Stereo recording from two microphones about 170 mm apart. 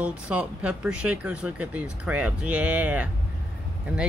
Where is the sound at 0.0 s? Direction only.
5° right (ahead or behind).